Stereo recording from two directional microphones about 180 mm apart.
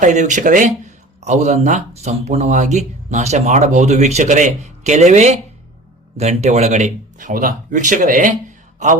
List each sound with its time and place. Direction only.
0.0 s speech: 40° right (ahead or behind)